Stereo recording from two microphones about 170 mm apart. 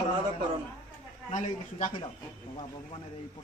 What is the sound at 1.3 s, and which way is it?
Speech, 45° left (ahead or behind).